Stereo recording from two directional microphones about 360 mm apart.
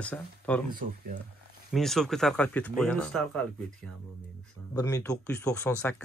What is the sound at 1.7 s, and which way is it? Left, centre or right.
Speech, centre.